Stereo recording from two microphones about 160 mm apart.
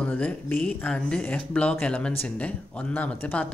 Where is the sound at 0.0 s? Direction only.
10° left (ahead or behind).